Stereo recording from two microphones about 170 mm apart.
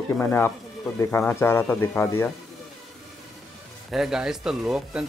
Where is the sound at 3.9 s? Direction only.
5° right (ahead or behind).